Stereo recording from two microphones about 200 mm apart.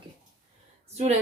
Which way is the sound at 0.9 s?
30° right (ahead or behind).